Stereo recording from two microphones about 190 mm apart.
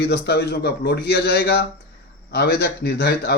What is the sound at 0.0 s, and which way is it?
Speech, 60° left (ahead or behind).